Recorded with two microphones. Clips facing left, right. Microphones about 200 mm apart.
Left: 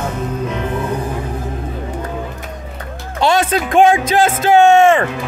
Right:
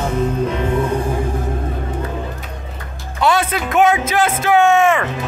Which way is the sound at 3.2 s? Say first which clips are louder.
Left 2 dB; 25° left (ahead or behind).